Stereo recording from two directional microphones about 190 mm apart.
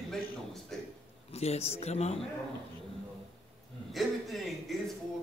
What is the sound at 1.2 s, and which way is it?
Speech, 35° left (ahead or behind).